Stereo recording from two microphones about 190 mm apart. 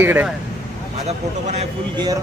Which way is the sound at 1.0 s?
35° right (ahead or behind).